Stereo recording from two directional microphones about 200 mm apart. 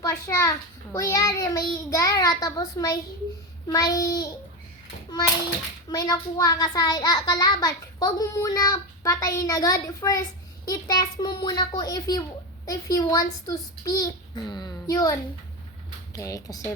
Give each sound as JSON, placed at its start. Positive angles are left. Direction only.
{"t": 0.0, "sound": "a child's voice", "side_deg": 15}
{"t": 5.9, "sound": "a child's voice", "side_deg": 20}
{"t": 16.1, "sound": "a child's voice", "side_deg": 15}